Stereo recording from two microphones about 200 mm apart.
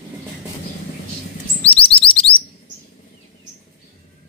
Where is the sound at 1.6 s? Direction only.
30° left (ahead or behind).